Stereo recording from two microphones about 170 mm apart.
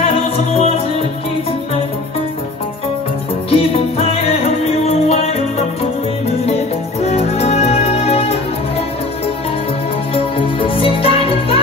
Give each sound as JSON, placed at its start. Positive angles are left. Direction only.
{"t": 0.0, "sound": "music", "side_deg": 35}
{"t": 3.4, "sound": "music", "side_deg": 35}
{"t": 7.1, "sound": "music", "side_deg": 40}
{"t": 10.1, "sound": "music", "side_deg": 30}